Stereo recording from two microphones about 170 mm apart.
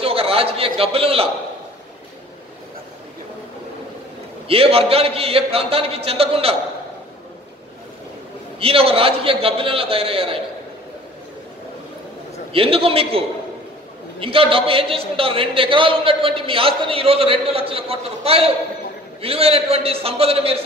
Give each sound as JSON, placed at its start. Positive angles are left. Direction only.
{"t": 0.0, "sound": "a man's voice", "side_deg": -35}
{"t": 4.5, "sound": "a man's voice", "side_deg": -35}
{"t": 8.5, "sound": "a man's voice", "side_deg": -35}
{"t": 12.5, "sound": "a man's voice", "side_deg": -35}
{"t": 14.2, "sound": "a man's voice", "side_deg": -30}